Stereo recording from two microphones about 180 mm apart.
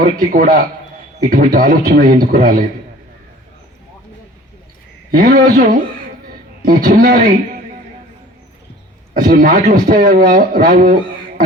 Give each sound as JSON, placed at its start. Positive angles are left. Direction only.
{"t": 0.2, "sound": "a man's voice", "side_deg": -50}
{"t": 5.1, "sound": "a man's voice", "side_deg": -55}
{"t": 9.1, "sound": "a man's voice", "side_deg": -50}